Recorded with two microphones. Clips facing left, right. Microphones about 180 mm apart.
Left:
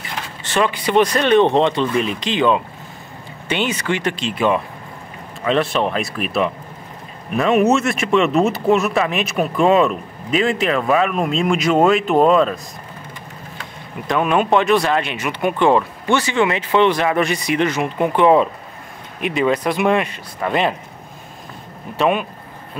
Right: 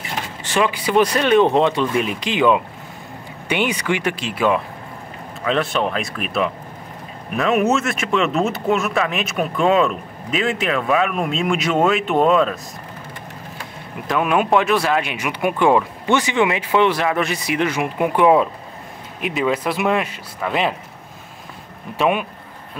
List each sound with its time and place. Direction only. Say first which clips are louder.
0.4 s speech: left 1 dB; 10° right (ahead or behind)
14.0 s speech: left 1 dB; 5° right (ahead or behind)
21.9 s speech: left 1 dB; 5° right (ahead or behind)